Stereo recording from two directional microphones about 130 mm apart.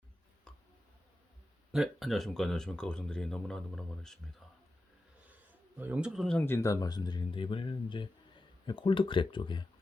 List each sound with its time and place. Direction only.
0.5 s a sound: 5° left (ahead or behind)
1.7 s speech: centre (ahead or behind)
5.7 s speech: 10° right (ahead or behind)
6.3 s speech: 20° left (ahead or behind); by 9.6 s 40° left (ahead or behind)